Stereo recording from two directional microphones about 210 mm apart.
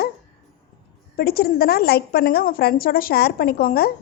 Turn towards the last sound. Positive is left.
turn(degrees=45)  # may be behind; listen again after turning